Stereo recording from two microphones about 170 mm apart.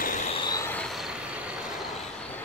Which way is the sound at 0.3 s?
25° left (ahead or behind).